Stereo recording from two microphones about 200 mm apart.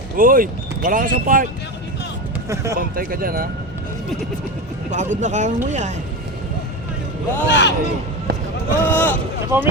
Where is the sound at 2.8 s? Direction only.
45° right (ahead or behind).